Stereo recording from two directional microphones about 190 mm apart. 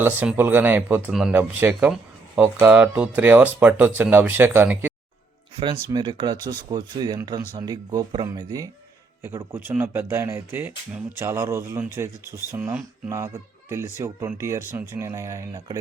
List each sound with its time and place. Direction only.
0.0 s speech: 10° right (ahead or behind)
5.9 s speech: 25° right (ahead or behind)